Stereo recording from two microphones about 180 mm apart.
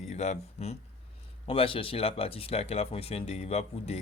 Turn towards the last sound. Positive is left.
turn(degrees=35)  # may be behind; listen again after turning